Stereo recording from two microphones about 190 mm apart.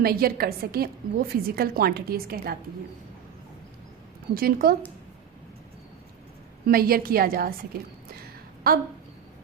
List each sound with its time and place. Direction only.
0.0 s a woman's voice: 50° right (ahead or behind)
4.4 s a woman's voice: 50° right (ahead or behind)
6.7 s a woman's voice: 50° right (ahead or behind)
8.7 s a woman's voice: 50° right (ahead or behind)